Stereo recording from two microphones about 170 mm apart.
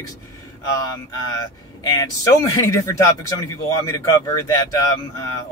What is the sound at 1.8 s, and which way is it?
Speech, 20° left (ahead or behind).